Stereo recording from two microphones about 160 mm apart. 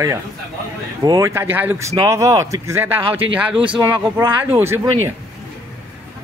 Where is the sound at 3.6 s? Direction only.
30° right (ahead or behind).